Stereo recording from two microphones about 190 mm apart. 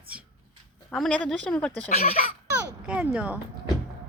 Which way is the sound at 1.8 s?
50° left (ahead or behind).